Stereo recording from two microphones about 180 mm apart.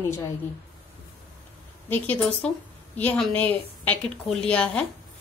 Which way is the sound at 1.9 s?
10° left (ahead or behind).